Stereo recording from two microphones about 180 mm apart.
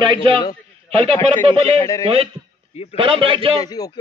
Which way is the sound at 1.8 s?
20° left (ahead or behind).